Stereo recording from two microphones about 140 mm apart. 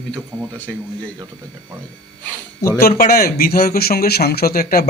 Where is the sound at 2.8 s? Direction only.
90° left.